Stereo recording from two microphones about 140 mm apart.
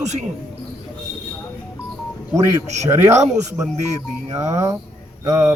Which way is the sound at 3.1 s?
55° right (ahead or behind).